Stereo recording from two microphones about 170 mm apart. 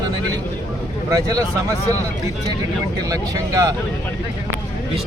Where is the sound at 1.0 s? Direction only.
20° right (ahead or behind).